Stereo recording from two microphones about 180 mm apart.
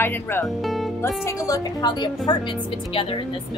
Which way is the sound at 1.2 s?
15° left (ahead or behind).